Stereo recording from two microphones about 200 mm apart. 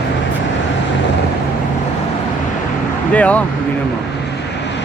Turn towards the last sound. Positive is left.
turn(degrees=5)  # may be behind; listen again after turning